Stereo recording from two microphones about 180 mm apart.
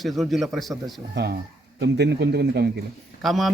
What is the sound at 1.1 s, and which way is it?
Speech, 75° right (ahead or behind).